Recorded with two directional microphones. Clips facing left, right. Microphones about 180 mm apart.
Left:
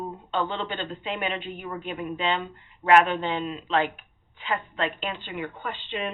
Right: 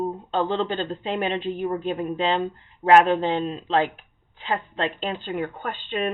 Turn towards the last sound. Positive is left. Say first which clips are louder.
# right 4 dB
turn(degrees=-50)  # may be behind; listen again after turning